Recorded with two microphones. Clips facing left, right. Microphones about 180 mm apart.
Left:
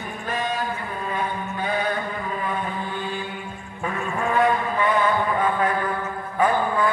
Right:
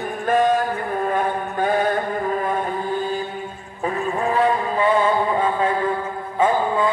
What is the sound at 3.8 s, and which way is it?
Mantra, 35° right (ahead or behind).